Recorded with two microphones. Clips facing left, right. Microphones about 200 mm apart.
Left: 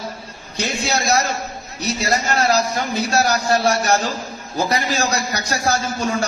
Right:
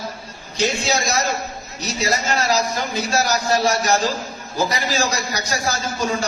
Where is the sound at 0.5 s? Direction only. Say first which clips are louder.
Right 2 dB; 60° left (ahead or behind).